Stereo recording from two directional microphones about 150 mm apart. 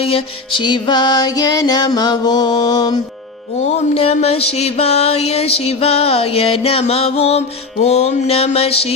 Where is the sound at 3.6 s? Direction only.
45° left (ahead or behind).